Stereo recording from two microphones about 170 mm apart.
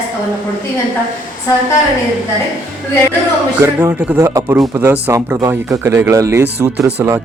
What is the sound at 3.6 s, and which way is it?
Speech, 15° right (ahead or behind).